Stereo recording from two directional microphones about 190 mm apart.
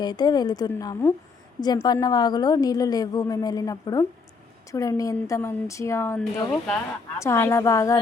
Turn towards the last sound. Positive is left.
turn(degrees=15)  # may be behind; listen again after turning